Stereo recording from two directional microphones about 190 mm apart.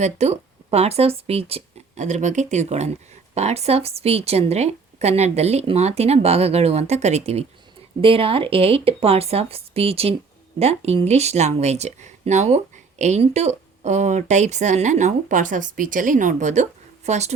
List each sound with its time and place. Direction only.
0.0 s speech: 35° right (ahead or behind)